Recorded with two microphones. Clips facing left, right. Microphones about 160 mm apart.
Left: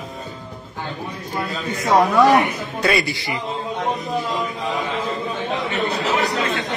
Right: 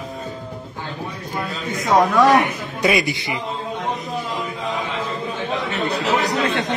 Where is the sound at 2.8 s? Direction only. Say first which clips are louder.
Right 2 dB; 20° right (ahead or behind).